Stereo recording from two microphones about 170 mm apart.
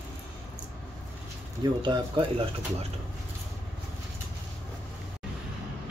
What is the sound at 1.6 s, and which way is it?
Speech, 25° right (ahead or behind).